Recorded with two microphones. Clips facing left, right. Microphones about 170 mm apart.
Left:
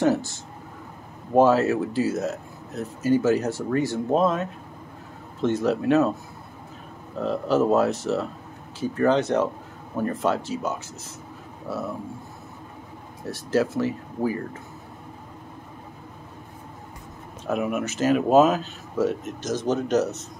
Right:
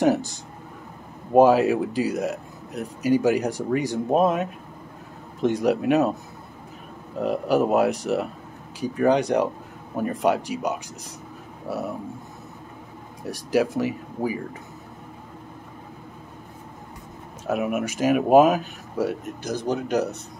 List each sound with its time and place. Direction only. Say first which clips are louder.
0.0 s speech: right 1 dB; 15° right (ahead or behind)
7.2 s speech: right 1 dB; 15° right (ahead or behind)
11.6 s a sound: right 1 dB; 10° right (ahead or behind)
13.2 s speech: right 1 dB; 15° right (ahead or behind)
17.5 s speech: right 1 dB; 10° right (ahead or behind)